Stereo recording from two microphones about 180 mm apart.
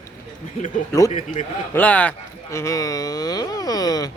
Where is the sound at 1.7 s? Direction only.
10° left (ahead or behind).